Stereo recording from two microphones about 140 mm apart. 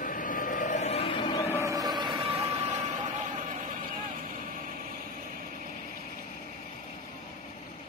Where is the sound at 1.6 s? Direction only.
25° right (ahead or behind); by 2.4 s 40° right (ahead or behind).